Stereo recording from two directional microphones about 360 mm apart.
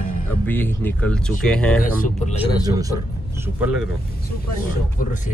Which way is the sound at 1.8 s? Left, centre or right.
Left.